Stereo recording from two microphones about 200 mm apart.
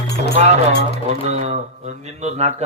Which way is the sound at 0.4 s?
35° right (ahead or behind).